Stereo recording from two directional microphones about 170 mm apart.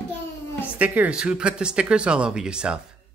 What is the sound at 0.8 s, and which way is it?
Speech, 5° right (ahead or behind).